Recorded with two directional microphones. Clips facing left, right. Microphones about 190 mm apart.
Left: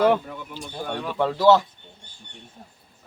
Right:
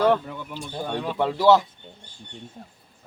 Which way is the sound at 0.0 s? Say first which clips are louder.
Left 1 dB; 10° left (ahead or behind).